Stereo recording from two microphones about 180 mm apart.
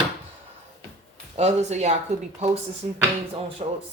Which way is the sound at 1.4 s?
40° right (ahead or behind).